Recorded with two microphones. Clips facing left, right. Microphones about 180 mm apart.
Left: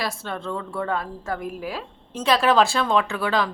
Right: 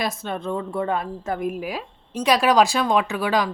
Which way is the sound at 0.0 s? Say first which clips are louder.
Right 2 dB; 20° right (ahead or behind).